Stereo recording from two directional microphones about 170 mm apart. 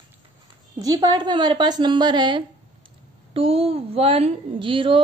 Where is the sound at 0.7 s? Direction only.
20° right (ahead or behind).